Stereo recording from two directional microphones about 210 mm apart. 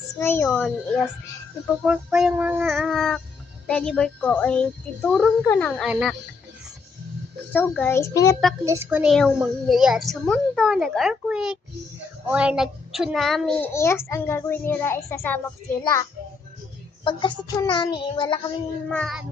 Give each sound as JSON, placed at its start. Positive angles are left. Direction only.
{"t": 0.2, "sound": "a child's voice", "side_deg": 10}
{"t": 7.5, "sound": "a child's voice", "side_deg": 10}
{"t": 8.6, "sound": "a woman's voice", "side_deg": -10}
{"t": 13.7, "sound": "a child's voice", "side_deg": 10}
{"t": 17.0, "sound": "child singing", "side_deg": 20}
{"t": 18.9, "sound": "a woman's voice", "side_deg": 0}